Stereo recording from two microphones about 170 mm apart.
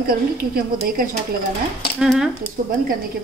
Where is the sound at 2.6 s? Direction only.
55° right (ahead or behind).